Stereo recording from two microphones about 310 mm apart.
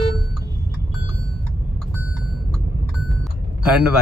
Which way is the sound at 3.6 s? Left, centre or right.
Centre.